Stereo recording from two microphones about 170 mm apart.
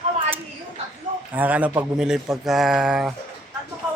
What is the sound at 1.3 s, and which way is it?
Speech, 10° right (ahead or behind).